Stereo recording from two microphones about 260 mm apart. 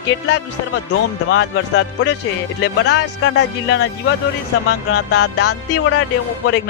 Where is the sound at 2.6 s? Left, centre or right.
Left.